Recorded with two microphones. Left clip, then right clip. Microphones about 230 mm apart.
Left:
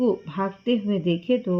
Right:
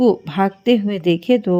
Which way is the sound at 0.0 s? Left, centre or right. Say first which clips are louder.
Right 8 dB; right.